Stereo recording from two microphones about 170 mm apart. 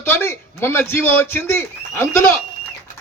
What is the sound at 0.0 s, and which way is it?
A man's voice, 15° left (ahead or behind).